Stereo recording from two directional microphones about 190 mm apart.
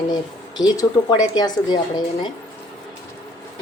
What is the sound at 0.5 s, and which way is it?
Speech, 20° left (ahead or behind).